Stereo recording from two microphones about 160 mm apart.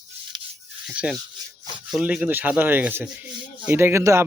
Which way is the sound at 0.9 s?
5° right (ahead or behind).